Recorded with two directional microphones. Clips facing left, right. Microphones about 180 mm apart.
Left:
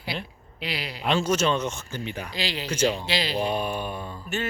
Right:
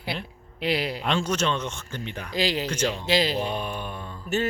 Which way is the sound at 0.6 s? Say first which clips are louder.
Right 7 dB; 50° right (ahead or behind).